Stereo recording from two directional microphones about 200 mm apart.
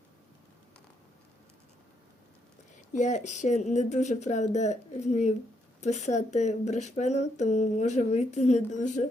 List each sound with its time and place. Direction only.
2.9 s speech: 35° left (ahead or behind)